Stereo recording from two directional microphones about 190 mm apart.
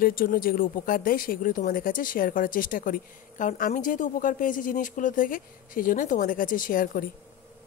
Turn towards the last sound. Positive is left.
turn(degrees=45)  # may be behind; listen again after turning